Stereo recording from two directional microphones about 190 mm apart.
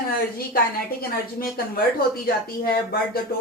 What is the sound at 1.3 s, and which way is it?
Speech, 50° left (ahead or behind).